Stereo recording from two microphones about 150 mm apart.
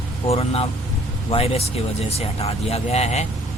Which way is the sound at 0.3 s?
40° left (ahead or behind).